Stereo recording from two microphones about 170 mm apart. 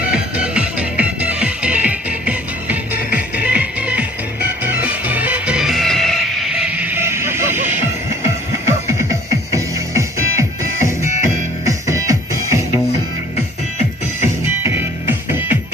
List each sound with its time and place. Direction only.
0.0 s music: 5° right (ahead or behind)
14.4 s music: 10° right (ahead or behind)